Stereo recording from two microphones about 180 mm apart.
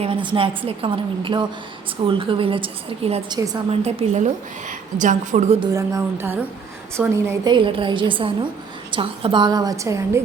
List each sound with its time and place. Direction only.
0.0 s a woman's voice: 30° right (ahead or behind)
3.3 s a woman's voice: 20° right (ahead or behind)
3.7 s a woman's voice: 35° right (ahead or behind)
5.7 s speech: 15° right (ahead or behind)
7.5 s a woman's voice: 25° right (ahead or behind)